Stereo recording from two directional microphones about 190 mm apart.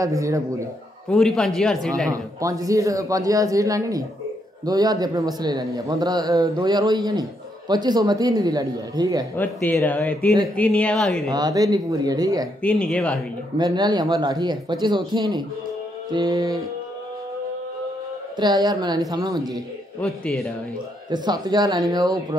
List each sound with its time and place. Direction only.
0.0 s speech: 15° right (ahead or behind)
1.1 s speech: centre (ahead or behind)
2.0 s a man's voice: 20° right (ahead or behind)
9.4 s speech: 10° left (ahead or behind)
11.2 s a man's voice: 20° right (ahead or behind)
12.6 s speech: 5° left (ahead or behind)
13.6 s a man's voice: 20° right (ahead or behind)
18.4 s a man's voice: 20° right (ahead or behind)
20.0 s speech: 5° left (ahead or behind)
21.1 s a man's voice: 20° right (ahead or behind)